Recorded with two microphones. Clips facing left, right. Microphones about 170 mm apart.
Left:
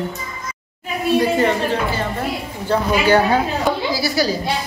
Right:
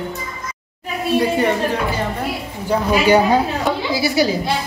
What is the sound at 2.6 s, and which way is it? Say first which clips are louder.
A woman's voice: right 1 dB; 10° right (ahead or behind).